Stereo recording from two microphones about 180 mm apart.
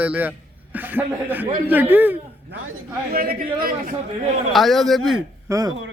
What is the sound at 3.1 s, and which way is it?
Speech, 55° right (ahead or behind).